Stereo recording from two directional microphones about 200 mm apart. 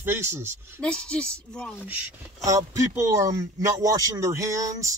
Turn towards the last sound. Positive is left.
turn(degrees=-15)  # may be behind; listen again after turning